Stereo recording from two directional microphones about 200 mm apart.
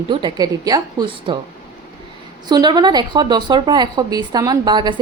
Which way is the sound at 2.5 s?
20° right (ahead or behind).